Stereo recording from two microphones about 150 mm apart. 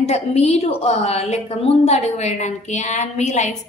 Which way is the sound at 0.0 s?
45° left (ahead or behind).